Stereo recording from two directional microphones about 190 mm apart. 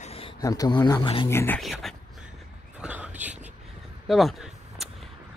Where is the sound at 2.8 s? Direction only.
10° right (ahead or behind).